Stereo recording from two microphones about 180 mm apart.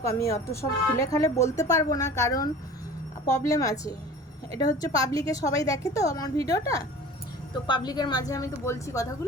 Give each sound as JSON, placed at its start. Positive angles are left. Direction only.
{"t": 0.0, "sound": "a woman's voice", "side_deg": 15}